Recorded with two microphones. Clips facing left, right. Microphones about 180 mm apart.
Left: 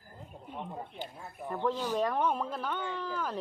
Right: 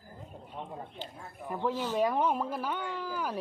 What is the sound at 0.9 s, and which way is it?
Speech, 15° left (ahead or behind).